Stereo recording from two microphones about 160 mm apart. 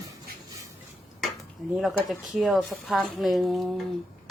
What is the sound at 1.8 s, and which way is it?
Speech, centre (ahead or behind).